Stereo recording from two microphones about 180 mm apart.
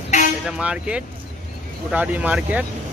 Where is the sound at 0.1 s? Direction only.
40° left (ahead or behind).